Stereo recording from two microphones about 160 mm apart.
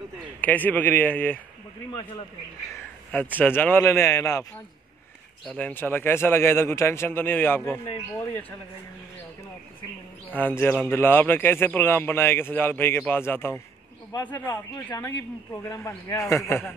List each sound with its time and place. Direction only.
0.4 s a man's voice: 10° left (ahead or behind)
3.3 s a man's voice: 10° left (ahead or behind)
5.5 s a man's voice: 10° left (ahead or behind)
10.3 s a man's voice: 10° left (ahead or behind)